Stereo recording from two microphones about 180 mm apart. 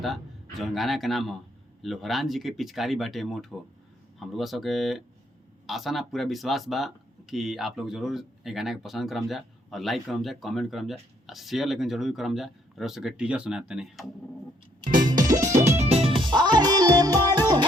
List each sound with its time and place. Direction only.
0.6 s speech: centre (ahead or behind)
14.8 s music: 50° right (ahead or behind)
15.1 s music: 20° right (ahead or behind)
15.4 s music: 45° right (ahead or behind); by 17.7 s 20° right (ahead or behind)